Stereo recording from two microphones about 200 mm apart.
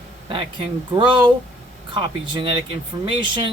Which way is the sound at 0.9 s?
25° right (ahead or behind).